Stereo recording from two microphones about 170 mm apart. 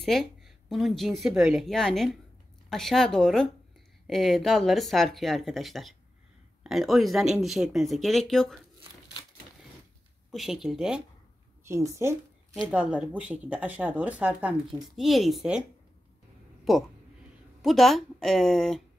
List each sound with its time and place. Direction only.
0.0 s speech: centre (ahead or behind)
10.3 s speech: centre (ahead or behind)
11.6 s speech: 15° right (ahead or behind)
12.5 s speech: 5° right (ahead or behind)
16.6 s speech: centre (ahead or behind)